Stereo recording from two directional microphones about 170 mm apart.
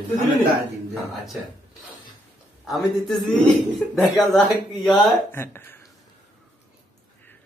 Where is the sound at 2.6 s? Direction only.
Centre (ahead or behind).